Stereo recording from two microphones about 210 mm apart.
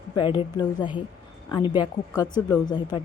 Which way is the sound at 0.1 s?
20° left (ahead or behind).